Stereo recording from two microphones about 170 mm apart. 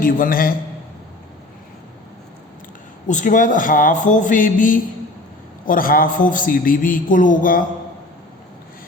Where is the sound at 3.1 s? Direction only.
50° left (ahead or behind).